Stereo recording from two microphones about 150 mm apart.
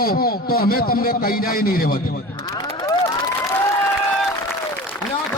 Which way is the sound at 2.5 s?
25° left (ahead or behind).